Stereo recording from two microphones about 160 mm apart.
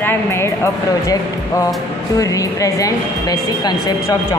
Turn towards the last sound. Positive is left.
turn(degrees=25)  # may be behind; listen again after turning